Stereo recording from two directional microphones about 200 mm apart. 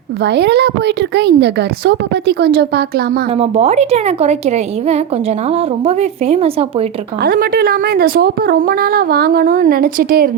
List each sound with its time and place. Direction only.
0.2 s a woman's voice: 55° right (ahead or behind)
3.3 s a woman's voice: 30° right (ahead or behind)
7.2 s a woman's voice: 50° right (ahead or behind)